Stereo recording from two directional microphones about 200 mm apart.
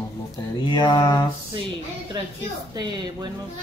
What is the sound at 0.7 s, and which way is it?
Mantra, 20° left (ahead or behind).